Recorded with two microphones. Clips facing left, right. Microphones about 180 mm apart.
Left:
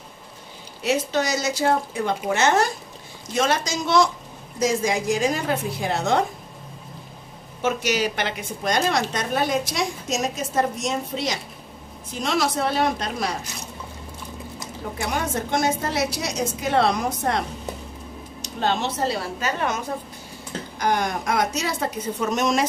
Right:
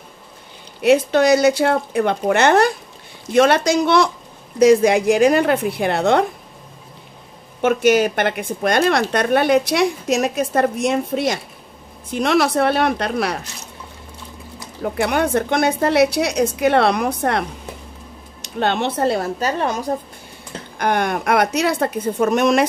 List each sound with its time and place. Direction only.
0.8 s a woman's voice: 60° right (ahead or behind)
7.6 s a woman's voice: 55° right (ahead or behind)
15.0 s a woman's voice: 65° right (ahead or behind); by 19.5 s 50° right (ahead or behind)
19.6 s a woman's voice: 35° right (ahead or behind)
20.7 s a woman's voice: 60° right (ahead or behind)